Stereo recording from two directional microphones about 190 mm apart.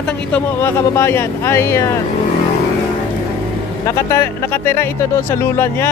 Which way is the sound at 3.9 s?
15° left (ahead or behind).